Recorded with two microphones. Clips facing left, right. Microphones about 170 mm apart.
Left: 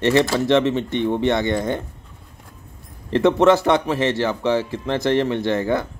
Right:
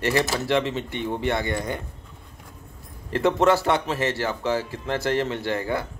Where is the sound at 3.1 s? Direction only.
20° left (ahead or behind).